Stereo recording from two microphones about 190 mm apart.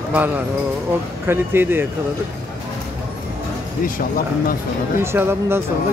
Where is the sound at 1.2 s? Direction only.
10° right (ahead or behind).